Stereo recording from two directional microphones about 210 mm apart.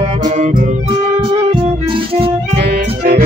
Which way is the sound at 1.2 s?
25° right (ahead or behind).